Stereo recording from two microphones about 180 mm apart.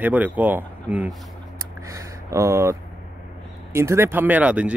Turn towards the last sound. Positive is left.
turn(degrees=-5)  # may be behind; listen again after turning